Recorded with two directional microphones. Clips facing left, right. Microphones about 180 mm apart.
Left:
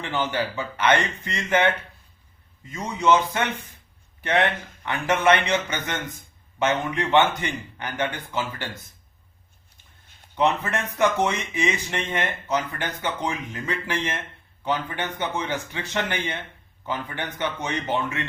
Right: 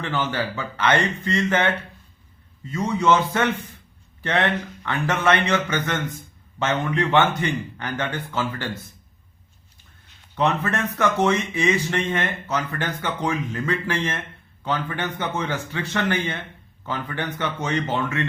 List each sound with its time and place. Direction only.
0.0 s speech: 15° left (ahead or behind)
2.7 s speech: 15° left (ahead or behind)
10.3 s speech: 15° left (ahead or behind)